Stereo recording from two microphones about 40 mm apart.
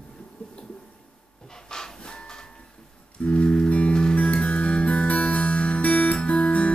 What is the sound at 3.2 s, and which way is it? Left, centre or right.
Music, left.